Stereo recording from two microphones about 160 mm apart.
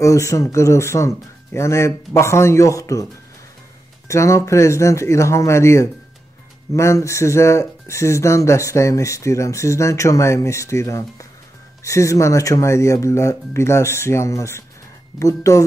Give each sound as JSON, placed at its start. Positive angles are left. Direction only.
{"t": 0.0, "sound": "speech", "side_deg": 20}
{"t": 4.1, "sound": "speech", "side_deg": 20}